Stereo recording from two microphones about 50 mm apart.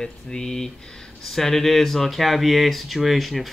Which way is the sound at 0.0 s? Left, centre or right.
Centre.